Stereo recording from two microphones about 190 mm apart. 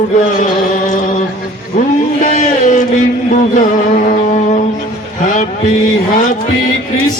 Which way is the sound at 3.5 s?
45° left (ahead or behind).